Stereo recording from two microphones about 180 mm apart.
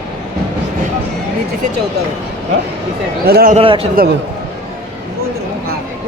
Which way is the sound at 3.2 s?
60° right (ahead or behind).